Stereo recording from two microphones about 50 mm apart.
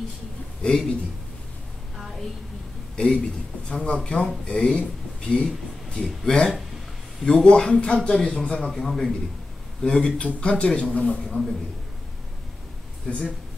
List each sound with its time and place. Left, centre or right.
0.6 s a man's voice: centre
3.0 s speech: centre
9.8 s speech: centre
11.2 s a man's voice: centre
13.1 s speech: left